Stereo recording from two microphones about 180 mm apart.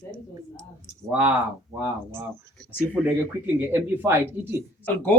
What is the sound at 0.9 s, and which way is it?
Speech, 10° right (ahead or behind).